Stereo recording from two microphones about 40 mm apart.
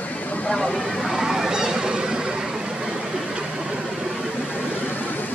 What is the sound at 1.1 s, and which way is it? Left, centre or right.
Vehicle, centre.